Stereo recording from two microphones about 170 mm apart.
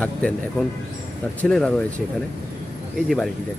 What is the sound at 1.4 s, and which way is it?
Speech, 5° left (ahead or behind).